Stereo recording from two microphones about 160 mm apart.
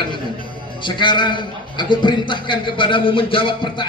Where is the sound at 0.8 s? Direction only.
30° left (ahead or behind).